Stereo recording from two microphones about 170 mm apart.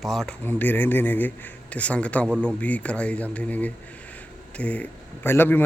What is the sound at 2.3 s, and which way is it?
Speech, 10° right (ahead or behind).